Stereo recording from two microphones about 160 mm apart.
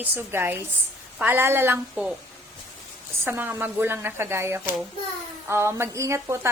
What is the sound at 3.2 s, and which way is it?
Speech, 15° right (ahead or behind).